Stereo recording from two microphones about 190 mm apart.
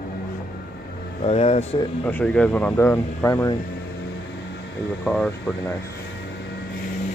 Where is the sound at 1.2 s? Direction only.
35° left (ahead or behind).